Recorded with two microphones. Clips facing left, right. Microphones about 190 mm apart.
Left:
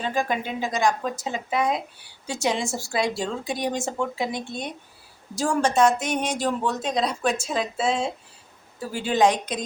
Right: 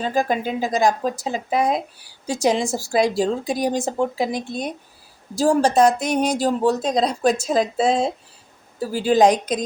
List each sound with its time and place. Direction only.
0.0 s speech: 40° right (ahead or behind)